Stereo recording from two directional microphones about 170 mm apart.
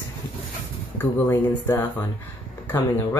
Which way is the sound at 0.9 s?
15° left (ahead or behind).